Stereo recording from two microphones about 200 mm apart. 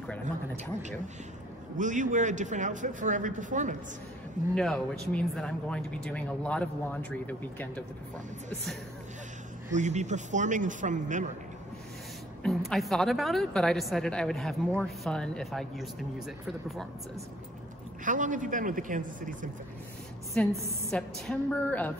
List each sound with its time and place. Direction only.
1.8 s a man's voice: 40° right (ahead or behind)
4.6 s speech: 5° left (ahead or behind)
9.7 s a man's voice: 35° right (ahead or behind)
12.4 s speech: centre (ahead or behind)
18.0 s a man's voice: 40° right (ahead or behind)
20.4 s a woman's voice: 5° left (ahead or behind)